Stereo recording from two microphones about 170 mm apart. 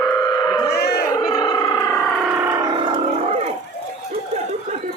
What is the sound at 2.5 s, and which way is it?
Music, 25° right (ahead or behind).